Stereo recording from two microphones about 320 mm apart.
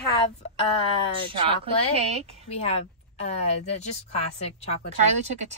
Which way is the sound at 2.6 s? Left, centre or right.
Centre.